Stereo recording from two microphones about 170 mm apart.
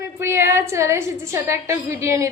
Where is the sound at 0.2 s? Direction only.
15° right (ahead or behind).